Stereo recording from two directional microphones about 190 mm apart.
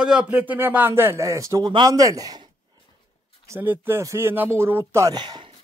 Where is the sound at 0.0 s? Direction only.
5° right (ahead or behind); by 5.5 s 25° right (ahead or behind).